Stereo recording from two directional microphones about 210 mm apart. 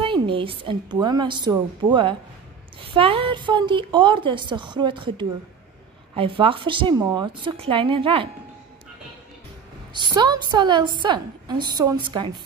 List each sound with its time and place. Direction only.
0.0 s a woman's voice: 25° right (ahead or behind)
9.9 s a woman's voice: 20° right (ahead or behind)